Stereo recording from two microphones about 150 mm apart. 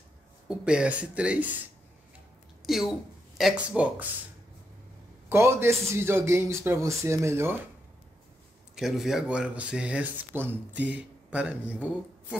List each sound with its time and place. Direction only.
0.5 s speech: 5° right (ahead or behind)
2.6 s a woman's voice: centre (ahead or behind)
5.3 s speech: 15° right (ahead or behind)
8.7 s speech: 5° right (ahead or behind)